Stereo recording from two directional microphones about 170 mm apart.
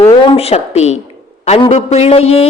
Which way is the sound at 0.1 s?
35° left (ahead or behind).